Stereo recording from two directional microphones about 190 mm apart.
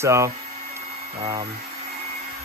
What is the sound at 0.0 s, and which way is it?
Speech, 15° right (ahead or behind).